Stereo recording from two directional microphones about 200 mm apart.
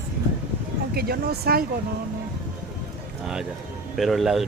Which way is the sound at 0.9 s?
50° right (ahead or behind).